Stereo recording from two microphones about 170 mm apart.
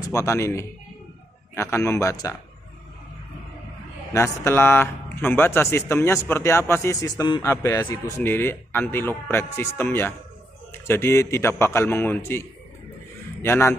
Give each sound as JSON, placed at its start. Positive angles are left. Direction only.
{"t": 0.1, "sound": "speech", "side_deg": 15}
{"t": 4.1, "sound": "a man's voice", "side_deg": 15}